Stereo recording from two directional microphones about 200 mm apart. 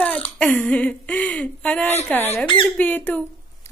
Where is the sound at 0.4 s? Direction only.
5° left (ahead or behind).